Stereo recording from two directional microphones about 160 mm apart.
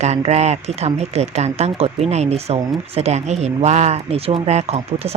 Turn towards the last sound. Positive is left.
turn(degrees=-40)  # may be behind; listen again after turning